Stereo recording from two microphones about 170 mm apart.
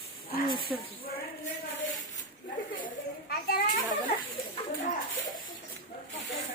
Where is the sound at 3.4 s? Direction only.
65° left (ahead or behind).